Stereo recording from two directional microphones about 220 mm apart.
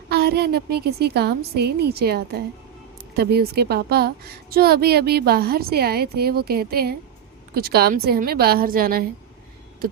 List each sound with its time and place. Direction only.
0.1 s a woman's voice: 45° right (ahead or behind)